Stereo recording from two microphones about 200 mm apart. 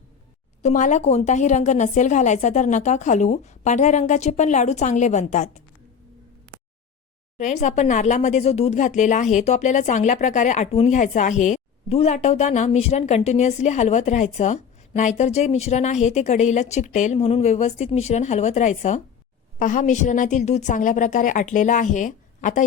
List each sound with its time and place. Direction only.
0.6 s speech: 35° left (ahead or behind)
7.3 s speech: 35° left (ahead or behind)